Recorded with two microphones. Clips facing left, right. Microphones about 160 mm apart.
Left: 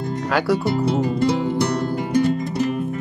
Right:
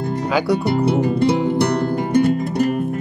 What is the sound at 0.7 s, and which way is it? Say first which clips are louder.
Music: right 3 dB; 65° right (ahead or behind).